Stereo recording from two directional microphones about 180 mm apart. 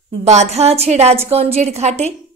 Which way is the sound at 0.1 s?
40° right (ahead or behind).